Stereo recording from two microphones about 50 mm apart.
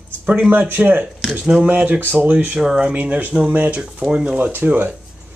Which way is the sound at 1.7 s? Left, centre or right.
Right.